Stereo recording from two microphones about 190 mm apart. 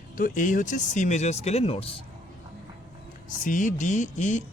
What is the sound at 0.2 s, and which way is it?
Speech, 45° left (ahead or behind).